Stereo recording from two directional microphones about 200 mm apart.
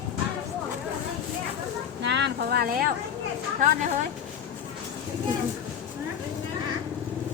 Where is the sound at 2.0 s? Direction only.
60° right (ahead or behind).